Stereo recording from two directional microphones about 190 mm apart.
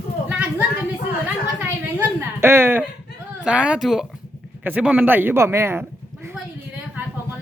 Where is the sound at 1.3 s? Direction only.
10° right (ahead or behind).